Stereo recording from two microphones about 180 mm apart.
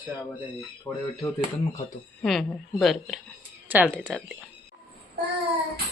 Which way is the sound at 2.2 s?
Centre (ahead or behind).